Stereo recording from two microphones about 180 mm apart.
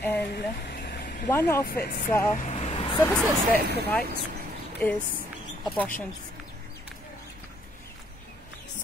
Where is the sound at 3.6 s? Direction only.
65° right (ahead or behind).